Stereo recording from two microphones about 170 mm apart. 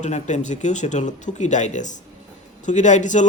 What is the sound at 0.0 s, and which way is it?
Speech, 45° left (ahead or behind).